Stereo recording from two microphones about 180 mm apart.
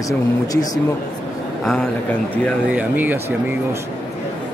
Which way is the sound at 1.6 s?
5° left (ahead or behind).